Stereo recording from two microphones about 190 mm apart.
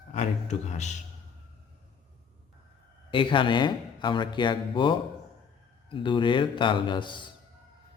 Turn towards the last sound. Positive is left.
turn(degrees=25)  # may be behind; listen again after turning